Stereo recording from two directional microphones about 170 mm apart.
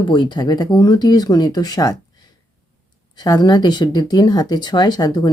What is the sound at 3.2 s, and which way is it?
Speech, 25° left (ahead or behind).